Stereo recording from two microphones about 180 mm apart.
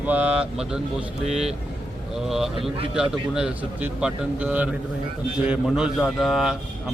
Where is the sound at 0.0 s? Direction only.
10° right (ahead or behind).